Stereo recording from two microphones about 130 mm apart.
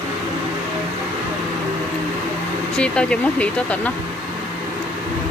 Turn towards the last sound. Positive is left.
turn(degrees=10)  # may be behind; listen again after turning